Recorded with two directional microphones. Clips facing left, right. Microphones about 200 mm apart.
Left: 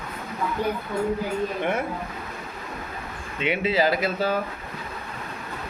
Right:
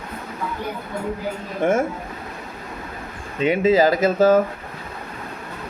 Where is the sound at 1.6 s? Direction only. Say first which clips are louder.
Right 11 dB; 45° right (ahead or behind).